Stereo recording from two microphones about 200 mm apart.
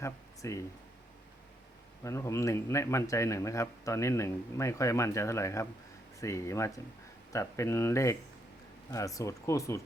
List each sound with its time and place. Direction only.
0.0 s speech: 15° left (ahead or behind)
2.0 s speech: 15° left (ahead or behind)